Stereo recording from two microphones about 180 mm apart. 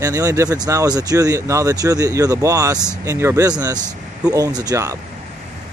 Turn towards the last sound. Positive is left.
turn(degrees=-15)  # may be behind; listen again after turning